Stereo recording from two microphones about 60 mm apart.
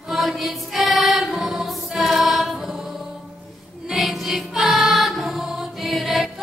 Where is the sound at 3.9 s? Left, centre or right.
Centre.